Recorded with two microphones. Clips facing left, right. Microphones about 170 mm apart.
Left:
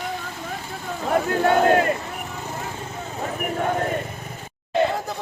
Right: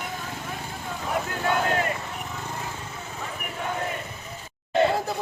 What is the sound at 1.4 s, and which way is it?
Speech, 50° left (ahead or behind).